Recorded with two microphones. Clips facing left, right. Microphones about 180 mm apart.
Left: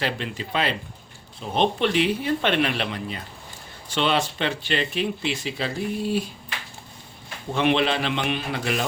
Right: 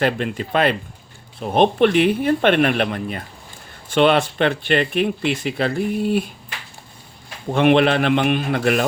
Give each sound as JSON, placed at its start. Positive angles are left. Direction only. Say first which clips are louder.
{"t": 0.0, "sound": "speech", "louder": "right 8 dB", "side_deg": -50}
{"t": 7.5, "sound": "speech", "louder": "right 7 dB", "side_deg": -55}